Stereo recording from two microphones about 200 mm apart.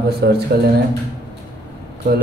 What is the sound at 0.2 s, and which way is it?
Speech, 55° right (ahead or behind).